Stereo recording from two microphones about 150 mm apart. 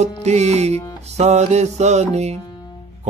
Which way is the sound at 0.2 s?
50° right (ahead or behind).